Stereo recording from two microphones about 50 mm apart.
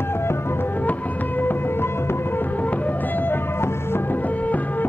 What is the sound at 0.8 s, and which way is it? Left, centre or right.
Music, left.